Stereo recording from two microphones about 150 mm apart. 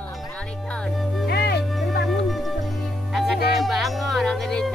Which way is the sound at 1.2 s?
90° left.